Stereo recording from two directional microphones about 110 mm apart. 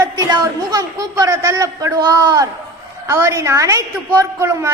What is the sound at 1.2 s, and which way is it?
A man's voice, 25° right (ahead or behind).